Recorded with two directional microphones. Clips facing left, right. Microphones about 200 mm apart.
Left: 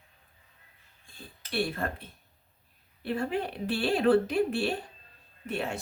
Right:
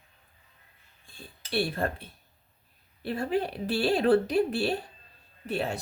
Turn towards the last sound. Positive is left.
turn(degrees=-35)  # may be behind; listen again after turning